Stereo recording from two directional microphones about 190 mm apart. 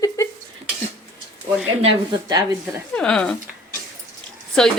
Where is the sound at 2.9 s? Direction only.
5° left (ahead or behind).